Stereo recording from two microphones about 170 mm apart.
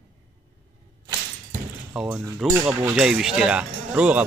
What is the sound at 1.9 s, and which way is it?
Speech, 5° right (ahead or behind).